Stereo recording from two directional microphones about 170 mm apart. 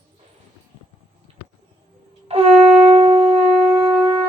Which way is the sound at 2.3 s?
35° right (ahead or behind).